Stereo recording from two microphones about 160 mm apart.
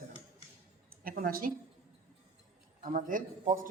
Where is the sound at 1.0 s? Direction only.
65° right (ahead or behind).